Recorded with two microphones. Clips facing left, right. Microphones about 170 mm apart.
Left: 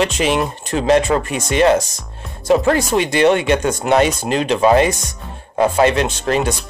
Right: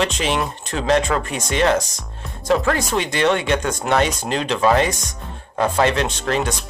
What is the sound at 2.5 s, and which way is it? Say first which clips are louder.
Speech: left 4 dB; 20° left (ahead or behind).